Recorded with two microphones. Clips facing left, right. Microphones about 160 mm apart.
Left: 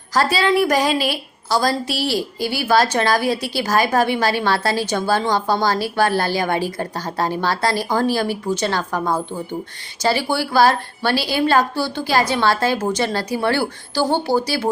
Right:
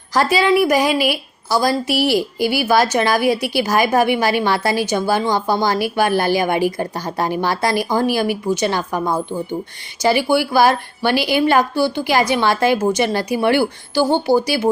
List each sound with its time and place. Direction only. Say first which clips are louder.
0.1 s a woman's voice: right 2 dB; 15° right (ahead or behind)